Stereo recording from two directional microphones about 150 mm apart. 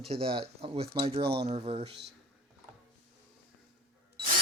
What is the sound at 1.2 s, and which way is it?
Speech, 90° right.